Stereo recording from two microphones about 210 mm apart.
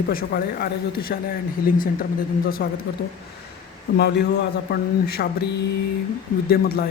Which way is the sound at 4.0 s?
50° left (ahead or behind).